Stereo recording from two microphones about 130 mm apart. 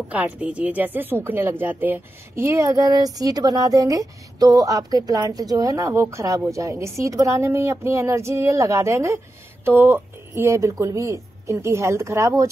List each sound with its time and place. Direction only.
0.1 s a woman's voice: 10° right (ahead or behind)